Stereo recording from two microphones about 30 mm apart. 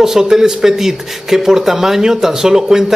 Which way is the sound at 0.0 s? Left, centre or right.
Centre.